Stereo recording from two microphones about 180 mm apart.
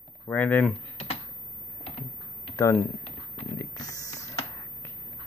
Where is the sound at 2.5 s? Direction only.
15° left (ahead or behind).